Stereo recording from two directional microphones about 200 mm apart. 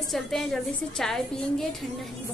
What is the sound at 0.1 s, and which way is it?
A woman's voice, centre (ahead or behind).